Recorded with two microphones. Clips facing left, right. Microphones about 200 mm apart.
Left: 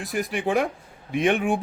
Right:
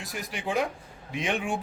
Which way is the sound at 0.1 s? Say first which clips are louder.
Left 7 dB; 55° left (ahead or behind).